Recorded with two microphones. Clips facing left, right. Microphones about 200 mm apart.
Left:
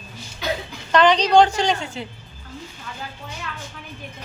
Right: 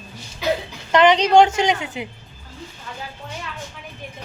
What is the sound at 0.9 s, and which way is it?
A woman's voice, 20° right (ahead or behind).